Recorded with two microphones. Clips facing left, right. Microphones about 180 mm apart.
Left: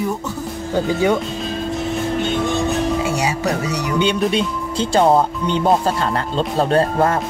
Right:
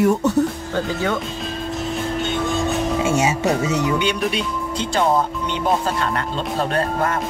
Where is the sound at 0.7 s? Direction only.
15° left (ahead or behind).